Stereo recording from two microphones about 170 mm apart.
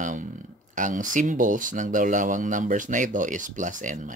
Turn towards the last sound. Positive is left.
turn(degrees=-50)  # may be behind; listen again after turning